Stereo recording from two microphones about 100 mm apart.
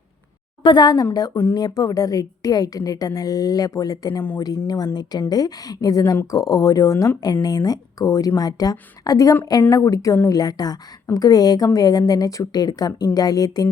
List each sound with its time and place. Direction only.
0.6 s a woman's voice: 50° left (ahead or behind)